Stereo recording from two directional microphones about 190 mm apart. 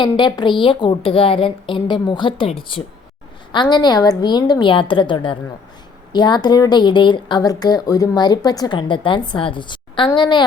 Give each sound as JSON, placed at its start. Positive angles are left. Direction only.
{"t": 0.0, "sound": "a woman's voice", "side_deg": 25}